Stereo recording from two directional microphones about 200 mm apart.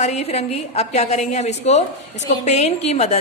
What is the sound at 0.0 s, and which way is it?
A woman's voice, 35° left (ahead or behind).